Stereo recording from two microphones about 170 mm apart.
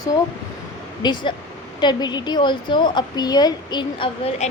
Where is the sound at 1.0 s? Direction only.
25° left (ahead or behind).